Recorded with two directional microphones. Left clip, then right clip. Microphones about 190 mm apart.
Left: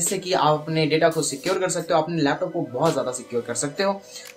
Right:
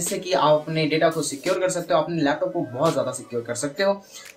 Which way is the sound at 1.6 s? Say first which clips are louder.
Even; 20° left (ahead or behind).